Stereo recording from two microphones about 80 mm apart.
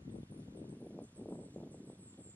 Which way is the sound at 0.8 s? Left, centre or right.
Centre.